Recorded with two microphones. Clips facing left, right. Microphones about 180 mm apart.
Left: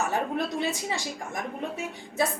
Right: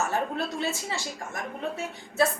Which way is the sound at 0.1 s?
15° left (ahead or behind).